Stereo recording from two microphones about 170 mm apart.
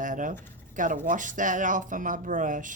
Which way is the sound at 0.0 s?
50° right (ahead or behind).